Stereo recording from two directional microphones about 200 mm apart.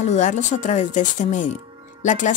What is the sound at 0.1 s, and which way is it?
Speech, 35° left (ahead or behind).